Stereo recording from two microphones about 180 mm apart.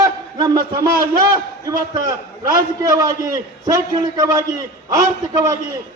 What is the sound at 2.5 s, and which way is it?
A man's voice, 20° right (ahead or behind).